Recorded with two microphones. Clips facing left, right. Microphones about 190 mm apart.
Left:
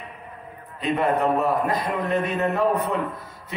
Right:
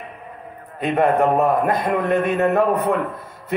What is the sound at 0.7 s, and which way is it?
A man's voice, 50° right (ahead or behind).